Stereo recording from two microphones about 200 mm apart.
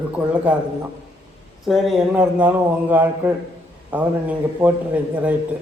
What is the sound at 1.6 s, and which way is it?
A man's voice, centre (ahead or behind).